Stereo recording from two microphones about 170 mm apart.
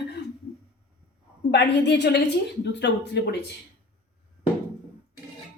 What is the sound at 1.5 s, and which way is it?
A woman's voice, 90° left.